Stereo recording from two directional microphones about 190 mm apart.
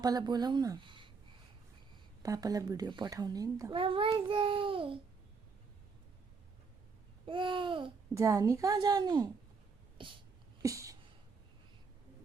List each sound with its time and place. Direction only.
0.0 s a child's voice: 20° right (ahead or behind)
2.2 s a child's voice: 20° right (ahead or behind)
7.3 s a child's voice: 25° right (ahead or behind)
10.6 s a sound: 15° right (ahead or behind)